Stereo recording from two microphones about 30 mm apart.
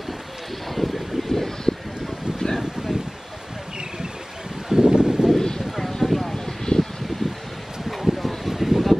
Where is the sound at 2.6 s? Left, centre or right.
Centre.